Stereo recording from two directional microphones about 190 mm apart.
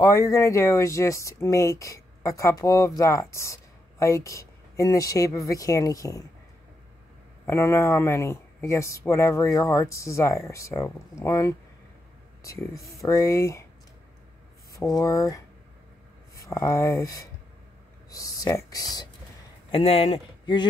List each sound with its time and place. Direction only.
0.0 s speech: 20° left (ahead or behind)
7.4 s speech: 15° left (ahead or behind)
15.0 s speech: 20° left (ahead or behind)
16.4 s speech: 15° left (ahead or behind)
18.1 s speech: 20° left (ahead or behind)
19.7 s speech: 30° left (ahead or behind)